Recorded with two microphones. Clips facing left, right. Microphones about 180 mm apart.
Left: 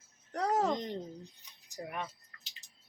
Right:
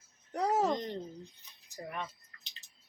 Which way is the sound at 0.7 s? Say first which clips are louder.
Even; 15° left (ahead or behind).